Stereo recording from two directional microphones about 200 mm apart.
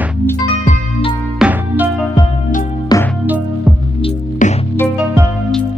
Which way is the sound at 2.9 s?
20° left (ahead or behind).